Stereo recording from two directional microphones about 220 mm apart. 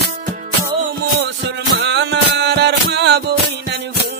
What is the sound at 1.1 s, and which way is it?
Music, 55° right (ahead or behind).